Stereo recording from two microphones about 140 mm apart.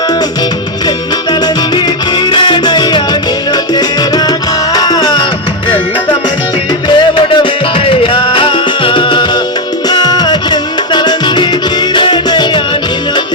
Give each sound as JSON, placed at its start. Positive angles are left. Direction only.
{"t": 1.3, "sound": "music", "side_deg": 30}